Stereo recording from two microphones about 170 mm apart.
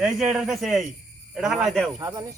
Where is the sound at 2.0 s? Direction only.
20° right (ahead or behind).